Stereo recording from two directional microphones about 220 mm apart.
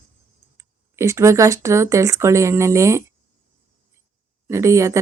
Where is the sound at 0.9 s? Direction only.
15° right (ahead or behind).